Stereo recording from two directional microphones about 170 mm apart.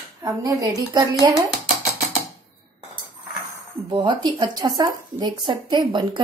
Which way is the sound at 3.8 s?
25° right (ahead or behind).